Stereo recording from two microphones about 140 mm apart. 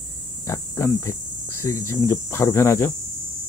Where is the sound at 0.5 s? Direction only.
20° left (ahead or behind).